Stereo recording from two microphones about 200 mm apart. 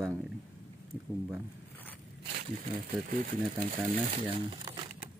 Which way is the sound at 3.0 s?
45° right (ahead or behind).